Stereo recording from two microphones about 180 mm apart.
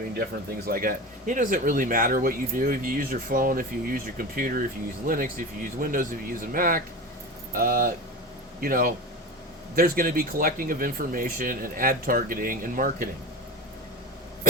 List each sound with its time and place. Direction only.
0.7 s speech: 50° right (ahead or behind)